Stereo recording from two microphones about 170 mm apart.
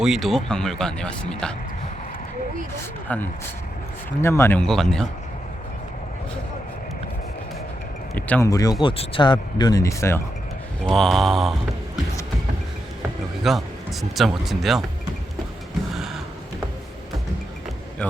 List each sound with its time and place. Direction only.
0.0 s speech: centre (ahead or behind)
3.1 s speech: 10° left (ahead or behind)
4.6 s speech: 5° left (ahead or behind)
8.1 s speech: 10° left (ahead or behind)
8.8 s speech: 30° left (ahead or behind)
10.8 s speech: centre (ahead or behind)
13.5 s speech: centre (ahead or behind)